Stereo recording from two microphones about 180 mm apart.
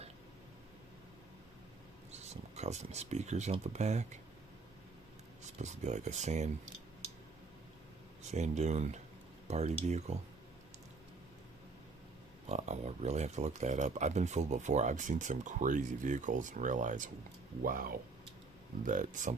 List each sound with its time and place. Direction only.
2.1 s speech: 40° right (ahead or behind)
5.4 s speech: 40° right (ahead or behind)
8.3 s speech: 40° right (ahead or behind)
12.5 s speech: 40° right (ahead or behind)